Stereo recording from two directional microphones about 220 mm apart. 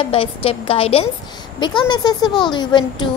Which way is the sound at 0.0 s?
25° left (ahead or behind).